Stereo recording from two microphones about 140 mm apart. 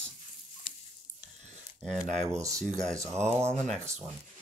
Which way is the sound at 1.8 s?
55° right (ahead or behind).